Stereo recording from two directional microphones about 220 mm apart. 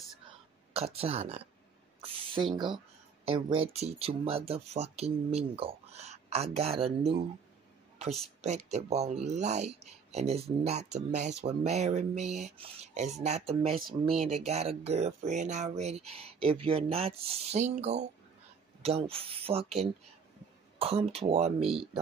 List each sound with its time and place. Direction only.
0.7 s speech: 25° right (ahead or behind)
2.0 s spray: 25° right (ahead or behind)
2.5 s speech: 20° right (ahead or behind)
8.4 s speech: 30° right (ahead or behind)
13.8 s speech: centre (ahead or behind)
14.2 s speech: 30° right (ahead or behind)
20.8 s speech: 25° right (ahead or behind)